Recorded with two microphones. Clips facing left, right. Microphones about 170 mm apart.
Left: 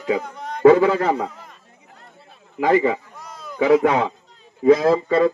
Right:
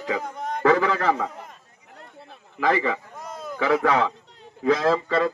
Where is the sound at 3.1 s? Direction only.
50° right (ahead or behind).